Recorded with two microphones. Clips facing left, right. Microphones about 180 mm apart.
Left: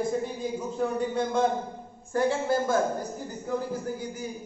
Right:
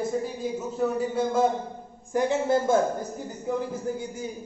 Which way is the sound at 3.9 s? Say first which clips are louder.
Right 3 dB; 25° right (ahead or behind).